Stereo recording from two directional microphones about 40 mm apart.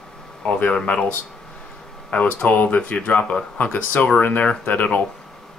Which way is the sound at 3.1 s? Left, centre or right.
Left.